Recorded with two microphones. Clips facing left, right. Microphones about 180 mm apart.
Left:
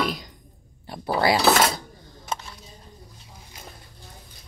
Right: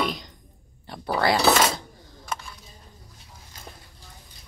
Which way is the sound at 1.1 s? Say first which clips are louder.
Left 1 dB; 10° left (ahead or behind).